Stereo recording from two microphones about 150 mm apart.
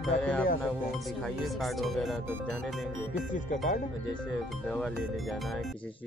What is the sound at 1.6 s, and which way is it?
Speech, centre (ahead or behind).